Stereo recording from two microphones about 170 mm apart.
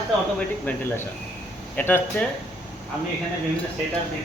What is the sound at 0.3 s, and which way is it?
Speech, 10° left (ahead or behind).